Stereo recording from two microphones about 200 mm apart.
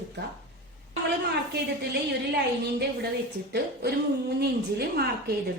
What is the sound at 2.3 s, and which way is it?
Speech, 55° right (ahead or behind).